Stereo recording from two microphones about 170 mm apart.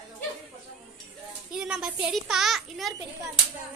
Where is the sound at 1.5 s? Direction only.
5° right (ahead or behind).